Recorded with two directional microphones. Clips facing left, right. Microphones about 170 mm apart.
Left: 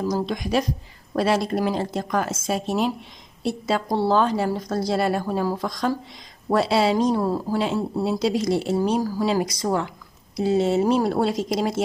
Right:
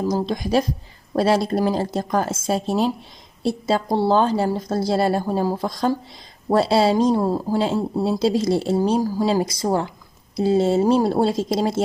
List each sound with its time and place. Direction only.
0.0 s speech: 30° right (ahead or behind)